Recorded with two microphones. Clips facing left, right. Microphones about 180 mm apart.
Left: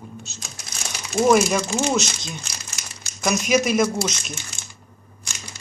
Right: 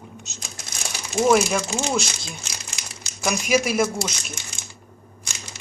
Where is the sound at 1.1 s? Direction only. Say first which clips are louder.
Left 1 dB; 5° right (ahead or behind).